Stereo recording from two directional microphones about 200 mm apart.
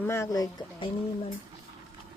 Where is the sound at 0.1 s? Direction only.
15° left (ahead or behind).